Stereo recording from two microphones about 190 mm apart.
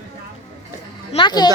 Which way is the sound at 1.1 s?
25° left (ahead or behind).